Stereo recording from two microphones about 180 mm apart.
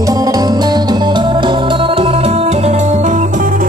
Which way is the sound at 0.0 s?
20° right (ahead or behind).